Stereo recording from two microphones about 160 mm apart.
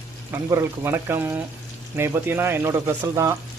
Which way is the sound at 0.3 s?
15° right (ahead or behind).